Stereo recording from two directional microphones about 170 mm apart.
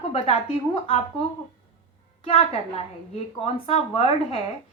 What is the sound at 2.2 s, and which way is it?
Speech, 35° left (ahead or behind).